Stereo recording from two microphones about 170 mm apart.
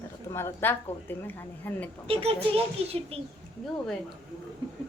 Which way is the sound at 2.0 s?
35° right (ahead or behind).